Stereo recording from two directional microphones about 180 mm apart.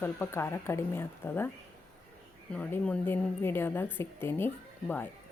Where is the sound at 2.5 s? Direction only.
5° left (ahead or behind).